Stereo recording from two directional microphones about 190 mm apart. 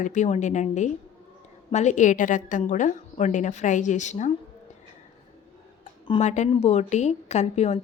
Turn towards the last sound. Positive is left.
turn(degrees=35)  # may be behind; listen again after turning